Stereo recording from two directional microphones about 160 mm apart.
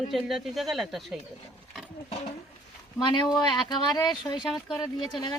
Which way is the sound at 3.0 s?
30° left (ahead or behind).